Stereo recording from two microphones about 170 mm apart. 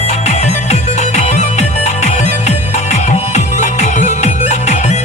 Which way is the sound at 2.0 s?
40° left (ahead or behind).